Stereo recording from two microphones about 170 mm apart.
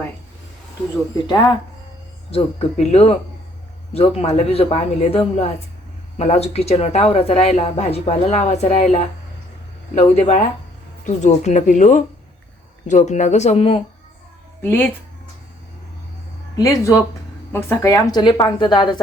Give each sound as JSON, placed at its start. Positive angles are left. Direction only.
{"t": 2.3, "sound": "speech", "side_deg": 35}
{"t": 14.6, "sound": "speech", "side_deg": 10}
{"t": 16.6, "sound": "a woman's voice", "side_deg": 20}